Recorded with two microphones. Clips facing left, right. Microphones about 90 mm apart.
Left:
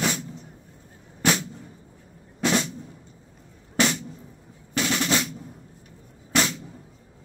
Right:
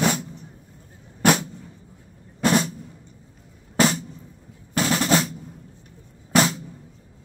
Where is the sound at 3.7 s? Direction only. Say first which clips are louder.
Right 3 dB; 40° right (ahead or behind).